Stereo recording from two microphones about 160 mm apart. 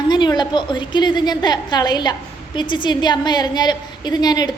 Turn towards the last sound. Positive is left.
turn(degrees=25)  # may be behind; listen again after turning